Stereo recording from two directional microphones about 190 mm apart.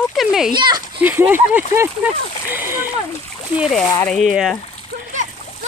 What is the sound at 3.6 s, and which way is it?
Speech, centre (ahead or behind).